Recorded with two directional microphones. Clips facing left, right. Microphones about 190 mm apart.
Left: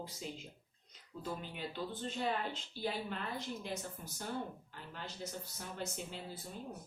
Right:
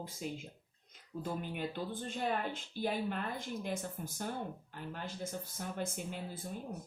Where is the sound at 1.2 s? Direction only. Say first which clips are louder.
Right 4 dB; 50° right (ahead or behind).